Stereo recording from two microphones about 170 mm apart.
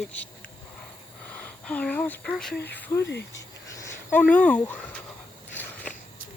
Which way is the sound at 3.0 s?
90° left.